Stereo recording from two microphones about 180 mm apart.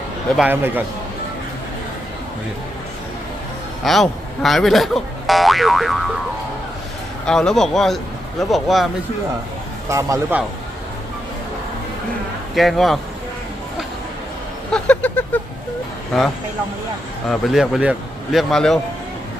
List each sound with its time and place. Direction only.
0.3 s a man's voice: 10° right (ahead or behind)
3.8 s speech: centre (ahead or behind)
7.3 s speech: centre (ahead or behind)
9.9 s a man's voice: 15° right (ahead or behind)
12.5 s speech: centre (ahead or behind)
14.7 s a sound: 5° left (ahead or behind)
16.1 s speech: centre (ahead or behind)